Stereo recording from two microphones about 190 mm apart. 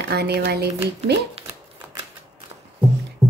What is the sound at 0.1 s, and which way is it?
Speech, 60° right (ahead or behind).